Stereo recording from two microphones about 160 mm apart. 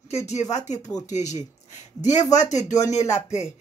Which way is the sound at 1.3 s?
45° left (ahead or behind).